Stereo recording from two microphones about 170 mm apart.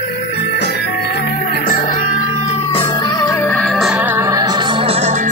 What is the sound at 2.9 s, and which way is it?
Music, 25° left (ahead or behind).